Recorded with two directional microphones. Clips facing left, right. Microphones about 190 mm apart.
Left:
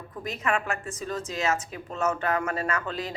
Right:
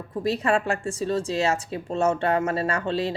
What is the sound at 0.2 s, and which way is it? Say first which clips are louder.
Speech: right 6 dB; 30° right (ahead or behind).